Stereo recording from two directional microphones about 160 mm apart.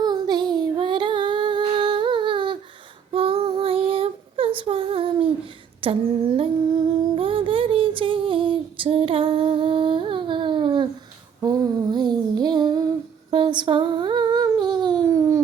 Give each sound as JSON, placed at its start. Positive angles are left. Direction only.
{"t": 0.0, "sound": "female singing", "side_deg": -25}
{"t": 3.1, "sound": "child singing", "side_deg": -35}
{"t": 5.8, "sound": "humming", "side_deg": -35}
{"t": 11.4, "sound": "a sound", "side_deg": -25}
{"t": 13.3, "sound": "humming", "side_deg": -30}